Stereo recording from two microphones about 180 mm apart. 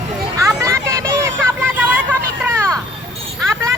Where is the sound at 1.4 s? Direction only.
10° right (ahead or behind).